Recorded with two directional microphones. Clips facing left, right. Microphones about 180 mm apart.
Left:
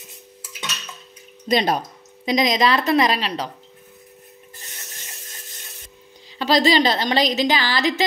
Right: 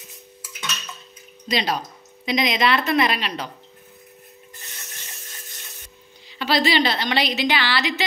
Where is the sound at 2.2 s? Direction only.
40° left (ahead or behind).